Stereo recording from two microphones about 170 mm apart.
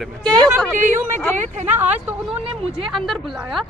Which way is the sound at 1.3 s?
45° right (ahead or behind).